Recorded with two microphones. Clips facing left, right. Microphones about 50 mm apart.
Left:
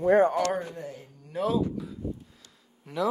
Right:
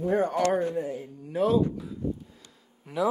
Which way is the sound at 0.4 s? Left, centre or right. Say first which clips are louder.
Right 4 dB; centre.